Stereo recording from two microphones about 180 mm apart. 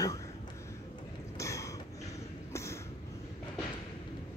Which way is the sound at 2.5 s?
15° left (ahead or behind).